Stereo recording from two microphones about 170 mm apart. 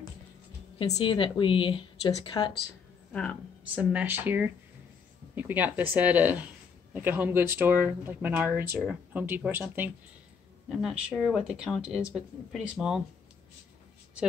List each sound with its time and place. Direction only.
0.9 s speech: 30° left (ahead or behind)
3.1 s speech: 5° left (ahead or behind)
3.7 s speech: 10° right (ahead or behind)